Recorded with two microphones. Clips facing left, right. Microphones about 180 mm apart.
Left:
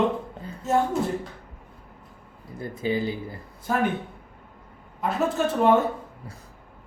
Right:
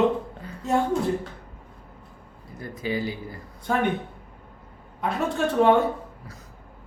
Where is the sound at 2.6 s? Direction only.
25° left (ahead or behind).